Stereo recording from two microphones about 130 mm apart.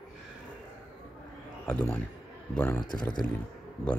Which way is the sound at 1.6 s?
10° left (ahead or behind).